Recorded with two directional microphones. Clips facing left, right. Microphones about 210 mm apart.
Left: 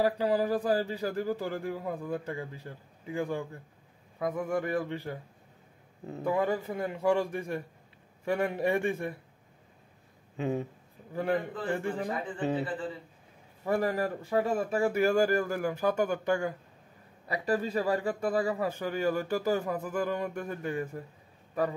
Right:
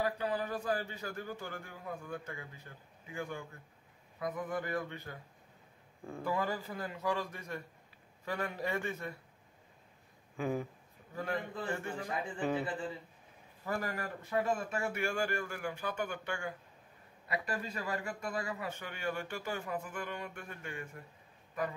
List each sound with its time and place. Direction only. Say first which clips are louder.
0.0 s a man's voice: left 8 dB; 30° left (ahead or behind)
10.3 s a man's voice: left 4 dB; 25° left (ahead or behind)
13.7 s a man's voice: left 9 dB; 30° left (ahead or behind)